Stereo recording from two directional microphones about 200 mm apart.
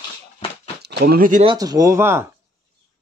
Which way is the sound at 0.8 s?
55° right (ahead or behind).